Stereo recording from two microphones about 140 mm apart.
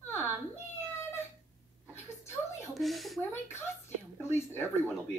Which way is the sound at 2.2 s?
20° left (ahead or behind).